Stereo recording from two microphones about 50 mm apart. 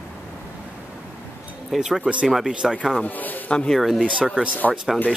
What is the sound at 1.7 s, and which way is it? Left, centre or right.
Speech, centre.